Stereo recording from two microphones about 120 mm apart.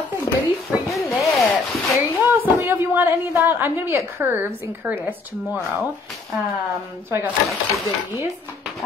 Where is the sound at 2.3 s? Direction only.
15° right (ahead or behind).